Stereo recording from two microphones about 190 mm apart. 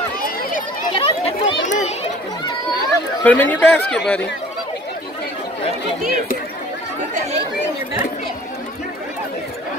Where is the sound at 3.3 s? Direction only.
10° left (ahead or behind).